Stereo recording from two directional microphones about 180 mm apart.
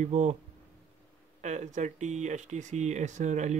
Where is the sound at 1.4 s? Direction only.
40° right (ahead or behind).